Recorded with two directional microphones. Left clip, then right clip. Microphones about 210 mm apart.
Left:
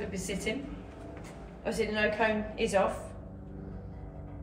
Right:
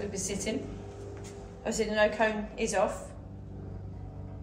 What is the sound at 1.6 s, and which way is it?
A woman's voice, 45° right (ahead or behind).